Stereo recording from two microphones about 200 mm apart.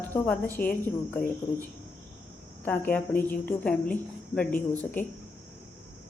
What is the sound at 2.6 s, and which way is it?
Speech, 10° left (ahead or behind).